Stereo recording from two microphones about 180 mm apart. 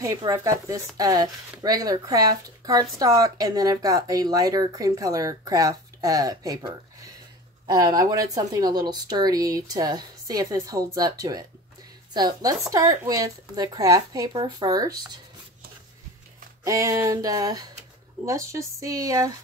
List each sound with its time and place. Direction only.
0.0 s a woman's voice: 20° right (ahead or behind)
16.6 s speech: 20° right (ahead or behind)